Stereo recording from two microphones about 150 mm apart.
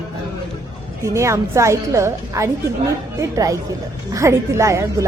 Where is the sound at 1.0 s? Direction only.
20° right (ahead or behind).